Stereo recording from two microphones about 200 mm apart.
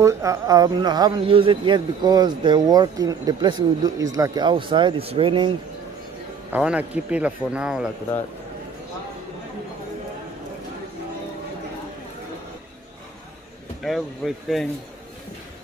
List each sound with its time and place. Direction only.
0.0 s speech: 15° right (ahead or behind)
6.5 s a man's voice: 5° right (ahead or behind)
13.8 s a man's voice: centre (ahead or behind)